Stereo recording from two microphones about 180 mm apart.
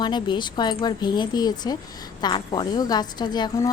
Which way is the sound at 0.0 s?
25° left (ahead or behind).